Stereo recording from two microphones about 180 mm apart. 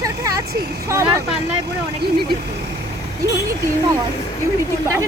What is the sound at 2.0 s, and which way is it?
Speech, 60° right (ahead or behind).